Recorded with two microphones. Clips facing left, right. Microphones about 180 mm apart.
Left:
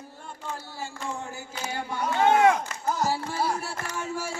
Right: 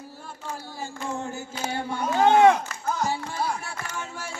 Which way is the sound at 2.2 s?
30° right (ahead or behind).